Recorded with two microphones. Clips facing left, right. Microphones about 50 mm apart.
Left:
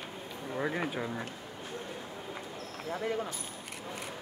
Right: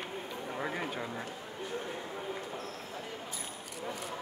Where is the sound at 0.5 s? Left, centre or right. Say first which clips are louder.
Left 4 dB; centre.